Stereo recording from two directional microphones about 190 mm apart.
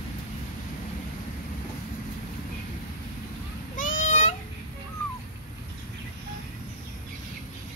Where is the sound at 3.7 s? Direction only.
45° left (ahead or behind).